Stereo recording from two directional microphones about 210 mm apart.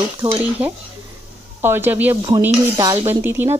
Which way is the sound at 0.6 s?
5° right (ahead or behind).